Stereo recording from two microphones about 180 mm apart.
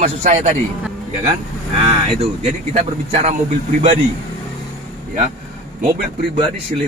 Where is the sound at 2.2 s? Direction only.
35° right (ahead or behind).